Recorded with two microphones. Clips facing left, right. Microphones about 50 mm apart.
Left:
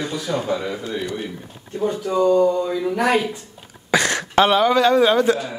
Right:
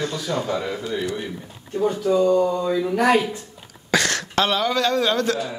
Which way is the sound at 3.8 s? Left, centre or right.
Centre.